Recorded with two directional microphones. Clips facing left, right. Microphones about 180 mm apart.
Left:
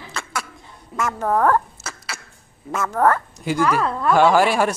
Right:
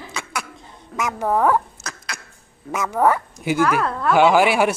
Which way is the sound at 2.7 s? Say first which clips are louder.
Even; 10° right (ahead or behind).